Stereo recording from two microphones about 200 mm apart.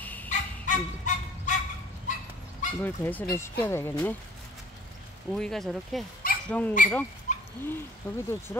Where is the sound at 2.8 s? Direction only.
10° left (ahead or behind).